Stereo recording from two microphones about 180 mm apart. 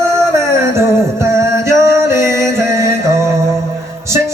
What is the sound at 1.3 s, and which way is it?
Music, 15° right (ahead or behind).